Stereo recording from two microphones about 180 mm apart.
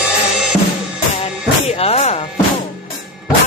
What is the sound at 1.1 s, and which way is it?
Music, 35° left (ahead or behind).